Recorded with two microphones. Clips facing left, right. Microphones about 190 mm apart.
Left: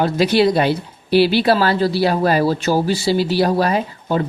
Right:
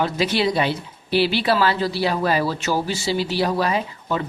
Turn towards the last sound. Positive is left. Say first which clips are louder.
# left 5 dB
turn(degrees=40)  # may be behind; listen again after turning